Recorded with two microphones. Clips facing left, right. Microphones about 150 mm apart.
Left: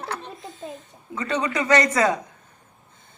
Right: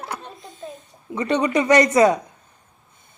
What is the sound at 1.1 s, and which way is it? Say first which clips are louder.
Speech: right 5 dB; 20° right (ahead or behind).